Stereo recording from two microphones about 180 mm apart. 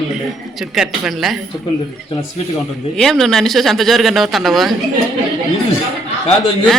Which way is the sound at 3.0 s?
Centre (ahead or behind).